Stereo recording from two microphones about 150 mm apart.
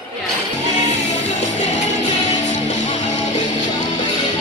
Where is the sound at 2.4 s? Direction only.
50° left (ahead or behind).